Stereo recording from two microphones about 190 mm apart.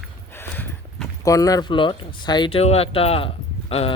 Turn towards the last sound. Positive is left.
turn(degrees=30)  # may be behind; listen again after turning